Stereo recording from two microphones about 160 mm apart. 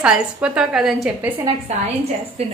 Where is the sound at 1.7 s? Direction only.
45° right (ahead or behind).